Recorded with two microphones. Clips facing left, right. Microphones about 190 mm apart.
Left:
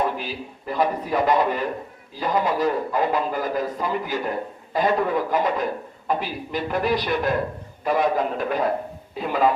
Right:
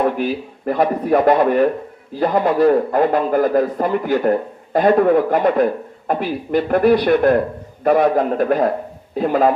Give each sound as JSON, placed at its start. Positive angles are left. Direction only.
{"t": 0.0, "sound": "a man's voice", "side_deg": -55}